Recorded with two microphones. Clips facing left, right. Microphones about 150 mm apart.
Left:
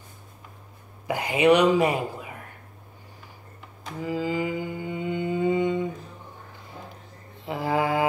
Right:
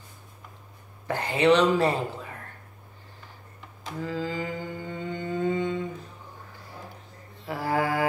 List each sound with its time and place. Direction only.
1.0 s a woman's voice: 10° left (ahead or behind)
4.0 s mantra: 15° left (ahead or behind)
6.6 s a sound: 20° left (ahead or behind)
7.4 s mantra: 20° left (ahead or behind)